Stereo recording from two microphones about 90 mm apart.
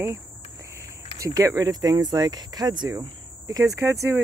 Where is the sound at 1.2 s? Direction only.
40° right (ahead or behind).